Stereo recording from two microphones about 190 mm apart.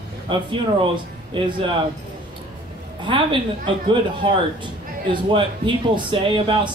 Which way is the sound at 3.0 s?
25° right (ahead or behind).